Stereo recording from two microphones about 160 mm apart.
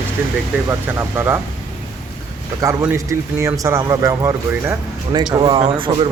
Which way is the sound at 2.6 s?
20° right (ahead or behind).